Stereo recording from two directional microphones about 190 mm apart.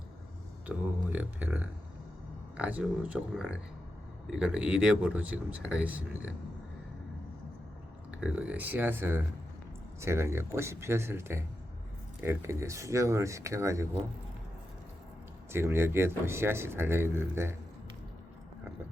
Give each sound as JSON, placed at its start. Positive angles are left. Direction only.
{"t": 0.7, "sound": "speech", "side_deg": -10}
{"t": 8.1, "sound": "speech", "side_deg": -5}
{"t": 15.5, "sound": "speech", "side_deg": -15}